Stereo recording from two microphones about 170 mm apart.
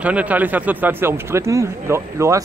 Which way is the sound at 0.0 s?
10° right (ahead or behind).